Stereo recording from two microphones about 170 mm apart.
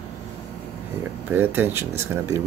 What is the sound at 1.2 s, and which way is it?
Speech, 10° right (ahead or behind).